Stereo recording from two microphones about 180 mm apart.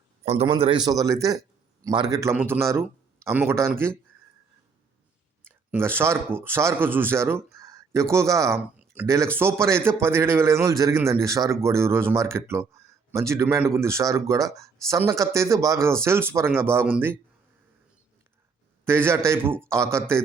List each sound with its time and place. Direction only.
0.3 s a man's voice: 30° right (ahead or behind); by 3.9 s 15° right (ahead or behind)
5.7 s a man's voice: 10° right (ahead or behind)
18.9 s a man's voice: 15° right (ahead or behind)